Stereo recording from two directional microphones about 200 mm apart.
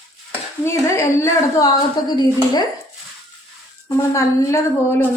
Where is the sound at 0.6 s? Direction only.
15° left (ahead or behind).